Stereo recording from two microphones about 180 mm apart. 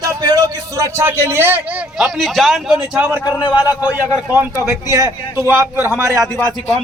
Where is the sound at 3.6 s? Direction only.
10° right (ahead or behind).